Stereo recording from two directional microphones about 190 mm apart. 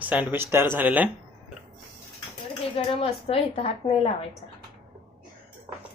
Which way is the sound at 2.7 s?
30° left (ahead or behind).